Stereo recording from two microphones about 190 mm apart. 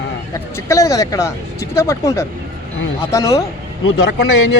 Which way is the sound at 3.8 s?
85° left.